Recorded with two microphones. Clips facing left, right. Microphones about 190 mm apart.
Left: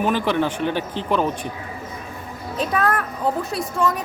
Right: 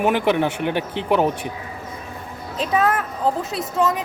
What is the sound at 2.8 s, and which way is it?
Speech, 20° right (ahead or behind).